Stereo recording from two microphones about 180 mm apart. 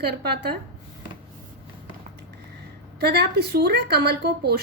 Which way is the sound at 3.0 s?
65° right (ahead or behind).